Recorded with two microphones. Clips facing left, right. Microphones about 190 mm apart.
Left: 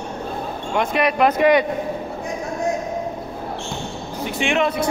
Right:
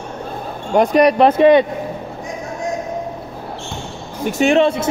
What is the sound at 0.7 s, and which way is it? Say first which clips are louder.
Speech: right 8 dB; 40° right (ahead or behind).